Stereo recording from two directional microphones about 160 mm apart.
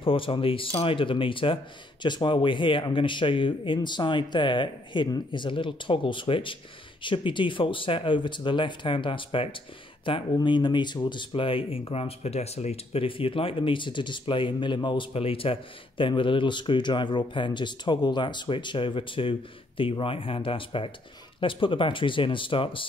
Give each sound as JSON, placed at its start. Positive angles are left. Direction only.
{"t": 0.0, "sound": "speech", "side_deg": 35}